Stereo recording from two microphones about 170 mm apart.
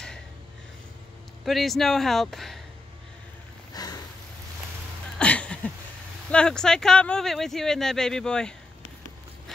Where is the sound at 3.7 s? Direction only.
25° left (ahead or behind).